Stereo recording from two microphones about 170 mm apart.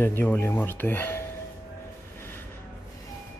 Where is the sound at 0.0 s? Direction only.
10° left (ahead or behind).